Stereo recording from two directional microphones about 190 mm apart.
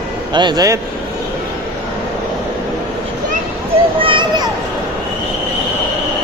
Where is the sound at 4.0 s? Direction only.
25° right (ahead or behind).